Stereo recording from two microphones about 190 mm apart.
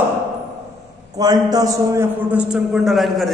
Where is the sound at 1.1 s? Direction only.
20° right (ahead or behind).